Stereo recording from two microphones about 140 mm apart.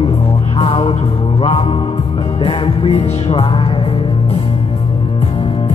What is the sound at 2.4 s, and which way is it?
Music, 40° left (ahead or behind).